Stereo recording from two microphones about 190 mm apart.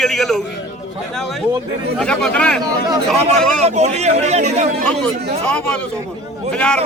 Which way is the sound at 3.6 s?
35° right (ahead or behind).